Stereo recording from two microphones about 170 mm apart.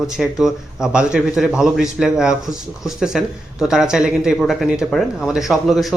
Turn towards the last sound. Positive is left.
turn(degrees=0)  # may be behind; listen again after turning